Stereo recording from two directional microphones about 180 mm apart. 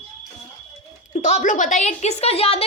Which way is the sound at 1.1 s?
40° left (ahead or behind).